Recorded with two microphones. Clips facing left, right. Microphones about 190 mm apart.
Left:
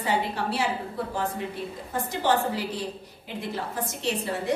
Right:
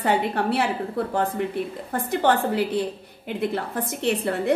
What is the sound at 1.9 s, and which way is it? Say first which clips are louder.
A woman's voice: right 4 dB; 60° right (ahead or behind).